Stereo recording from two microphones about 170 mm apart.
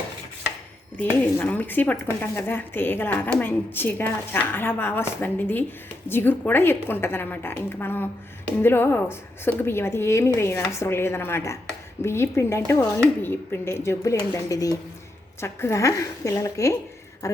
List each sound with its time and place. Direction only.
0.9 s speech: 10° left (ahead or behind)